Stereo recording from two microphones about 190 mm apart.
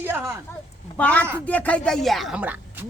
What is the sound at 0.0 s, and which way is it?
Speech, 10° right (ahead or behind).